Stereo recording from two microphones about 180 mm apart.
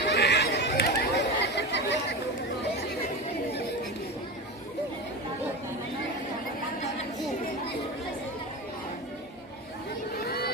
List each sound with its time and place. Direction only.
0.0 s chatter: 65° left (ahead or behind)
10.2 s vehicle: 60° left (ahead or behind)